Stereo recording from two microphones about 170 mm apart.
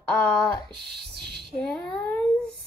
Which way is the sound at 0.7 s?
70° right (ahead or behind).